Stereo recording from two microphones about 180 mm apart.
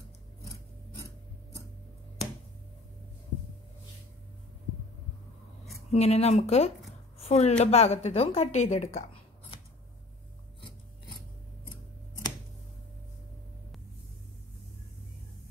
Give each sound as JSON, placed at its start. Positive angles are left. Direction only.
{"t": 5.9, "sound": "a woman's voice", "side_deg": 35}